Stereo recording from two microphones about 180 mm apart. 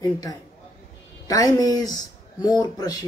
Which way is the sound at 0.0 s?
20° left (ahead or behind).